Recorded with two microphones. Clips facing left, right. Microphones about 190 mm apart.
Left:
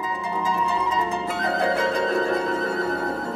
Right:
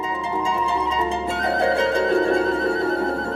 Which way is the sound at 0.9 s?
25° right (ahead or behind).